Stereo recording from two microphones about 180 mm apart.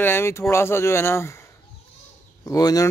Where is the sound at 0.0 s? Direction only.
15° left (ahead or behind).